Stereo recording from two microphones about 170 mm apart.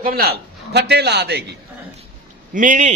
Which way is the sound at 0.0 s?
60° right (ahead or behind).